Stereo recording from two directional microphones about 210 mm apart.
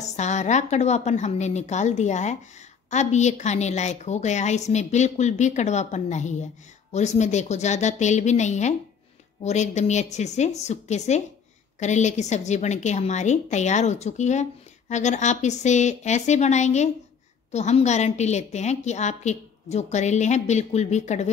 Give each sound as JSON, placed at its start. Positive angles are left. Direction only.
{"t": 0.0, "sound": "a woman's voice", "side_deg": 35}